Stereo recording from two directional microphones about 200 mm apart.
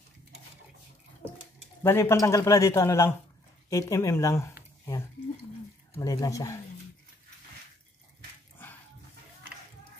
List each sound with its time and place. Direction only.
1.8 s a man's voice: 10° left (ahead or behind)
5.9 s a man's voice: 15° left (ahead or behind)